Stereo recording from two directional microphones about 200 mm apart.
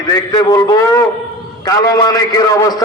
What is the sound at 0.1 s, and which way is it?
A man's voice, 20° left (ahead or behind).